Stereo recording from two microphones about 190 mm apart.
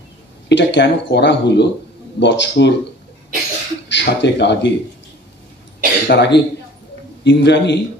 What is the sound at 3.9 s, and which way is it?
Speech, 65° left (ahead or behind).